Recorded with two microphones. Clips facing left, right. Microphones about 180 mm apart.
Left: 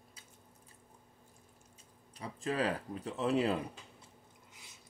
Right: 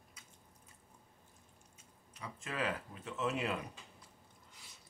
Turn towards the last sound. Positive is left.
turn(degrees=35)  # may be behind; listen again after turning